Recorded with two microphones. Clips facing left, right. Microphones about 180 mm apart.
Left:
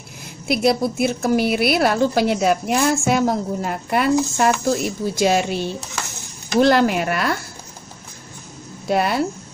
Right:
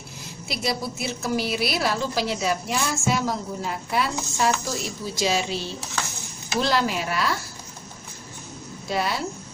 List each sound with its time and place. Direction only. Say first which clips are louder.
0.5 s a woman's voice: left 10 dB; 55° left (ahead or behind)
8.8 s speech: left 7 dB; 55° left (ahead or behind)